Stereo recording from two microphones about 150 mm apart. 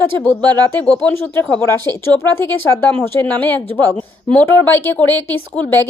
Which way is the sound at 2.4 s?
15° left (ahead or behind).